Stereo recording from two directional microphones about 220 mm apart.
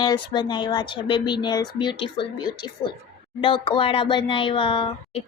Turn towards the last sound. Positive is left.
turn(degrees=25)  # may be behind; listen again after turning